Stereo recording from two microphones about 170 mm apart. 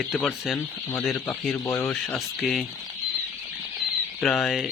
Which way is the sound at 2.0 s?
Centre (ahead or behind).